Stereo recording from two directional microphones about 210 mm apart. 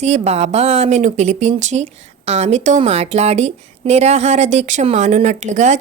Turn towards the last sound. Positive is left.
turn(degrees=-35)  # may be behind; listen again after turning